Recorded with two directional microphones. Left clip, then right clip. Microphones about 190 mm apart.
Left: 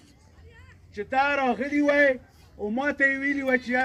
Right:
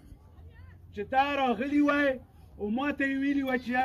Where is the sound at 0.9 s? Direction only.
20° right (ahead or behind).